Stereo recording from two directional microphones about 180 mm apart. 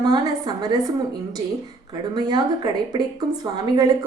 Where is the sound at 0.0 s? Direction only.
20° right (ahead or behind).